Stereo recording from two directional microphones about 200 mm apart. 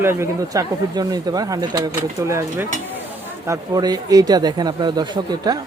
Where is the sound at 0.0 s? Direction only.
10° right (ahead or behind).